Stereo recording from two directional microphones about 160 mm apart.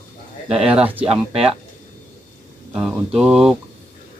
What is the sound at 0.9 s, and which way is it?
Speech, 35° right (ahead or behind).